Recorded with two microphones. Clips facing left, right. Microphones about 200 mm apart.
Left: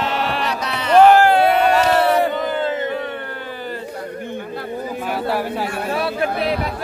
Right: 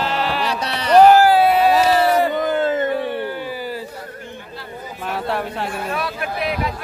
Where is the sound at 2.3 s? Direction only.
45° right (ahead or behind).